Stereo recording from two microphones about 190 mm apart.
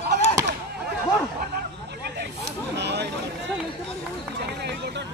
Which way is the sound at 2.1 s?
65° right (ahead or behind).